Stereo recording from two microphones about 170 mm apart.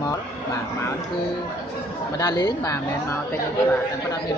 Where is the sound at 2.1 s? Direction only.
20° left (ahead or behind).